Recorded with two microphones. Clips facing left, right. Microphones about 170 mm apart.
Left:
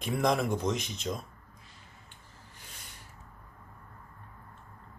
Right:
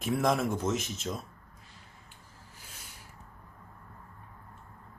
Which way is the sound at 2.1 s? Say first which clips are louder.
Even; 5° right (ahead or behind).